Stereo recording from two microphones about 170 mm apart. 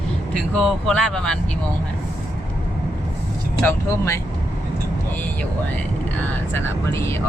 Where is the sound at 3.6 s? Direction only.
15° left (ahead or behind).